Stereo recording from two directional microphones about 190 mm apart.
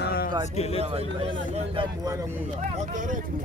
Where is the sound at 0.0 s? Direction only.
55° left (ahead or behind).